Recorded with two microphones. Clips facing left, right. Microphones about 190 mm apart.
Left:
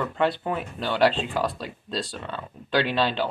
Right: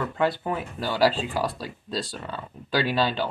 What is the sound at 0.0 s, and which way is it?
Speech, centre (ahead or behind).